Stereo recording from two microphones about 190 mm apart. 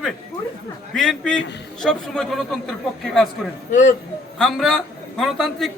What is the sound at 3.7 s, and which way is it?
Speech, 40° left (ahead or behind).